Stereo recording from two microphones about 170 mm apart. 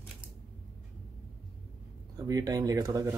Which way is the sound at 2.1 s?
20° right (ahead or behind).